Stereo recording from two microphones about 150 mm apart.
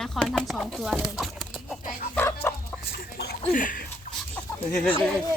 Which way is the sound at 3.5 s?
65° left (ahead or behind).